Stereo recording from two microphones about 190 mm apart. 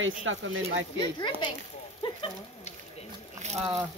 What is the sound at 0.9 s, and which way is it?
Speech, 25° left (ahead or behind).